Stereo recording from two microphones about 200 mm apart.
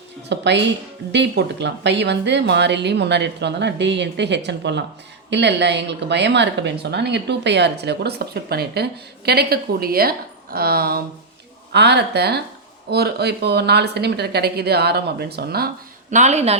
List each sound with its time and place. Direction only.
0.3 s speech: 60° right (ahead or behind)
16.1 s a woman's voice: 35° right (ahead or behind)